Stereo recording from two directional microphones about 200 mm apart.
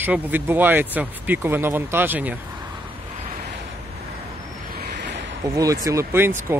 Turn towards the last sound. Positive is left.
turn(degrees=-10)  # may be behind; listen again after turning